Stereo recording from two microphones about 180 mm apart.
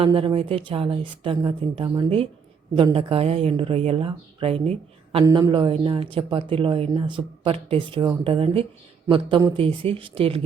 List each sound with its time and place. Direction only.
0.0 s speech: 30° right (ahead or behind)